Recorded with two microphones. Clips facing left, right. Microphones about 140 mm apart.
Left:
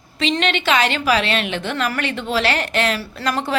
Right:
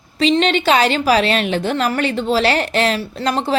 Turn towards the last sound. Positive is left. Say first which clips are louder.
# right 3 dB
turn(degrees=-30)  # may be behind; listen again after turning